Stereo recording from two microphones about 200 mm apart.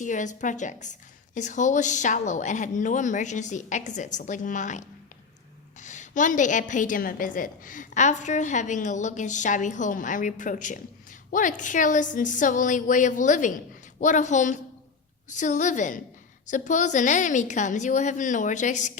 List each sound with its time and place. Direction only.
0.0 s a woman's voice: 40° left (ahead or behind)